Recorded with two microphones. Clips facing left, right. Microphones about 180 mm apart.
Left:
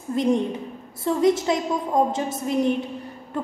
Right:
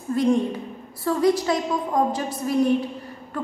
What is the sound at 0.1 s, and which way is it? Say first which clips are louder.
A woman's voice: right 1 dB; 20° left (ahead or behind).